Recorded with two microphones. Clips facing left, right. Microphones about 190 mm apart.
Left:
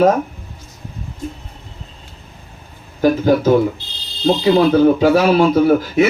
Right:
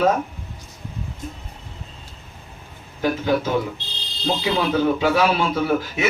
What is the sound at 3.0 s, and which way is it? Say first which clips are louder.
Speech: left 7 dB; 40° left (ahead or behind).